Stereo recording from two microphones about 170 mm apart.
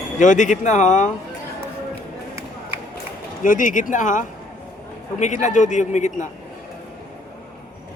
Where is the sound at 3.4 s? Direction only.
50° left (ahead or behind).